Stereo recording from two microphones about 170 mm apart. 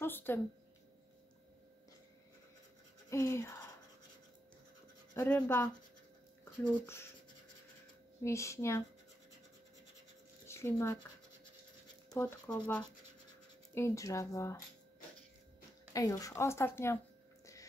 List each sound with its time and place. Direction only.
0.0 s a woman's voice: 10° left (ahead or behind)
3.1 s speech: 15° left (ahead or behind)
5.1 s speech: 10° left (ahead or behind)
8.2 s speech: 15° left (ahead or behind)
10.5 s speech: 15° left (ahead or behind)
12.1 s speech: 20° left (ahead or behind)
13.7 s speech: 15° left (ahead or behind)
15.9 s speech: 20° left (ahead or behind)